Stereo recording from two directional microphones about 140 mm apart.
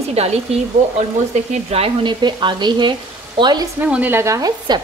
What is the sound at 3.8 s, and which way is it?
Speech, 10° right (ahead or behind).